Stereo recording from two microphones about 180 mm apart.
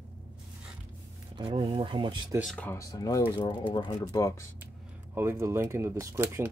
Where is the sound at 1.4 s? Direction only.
30° right (ahead or behind).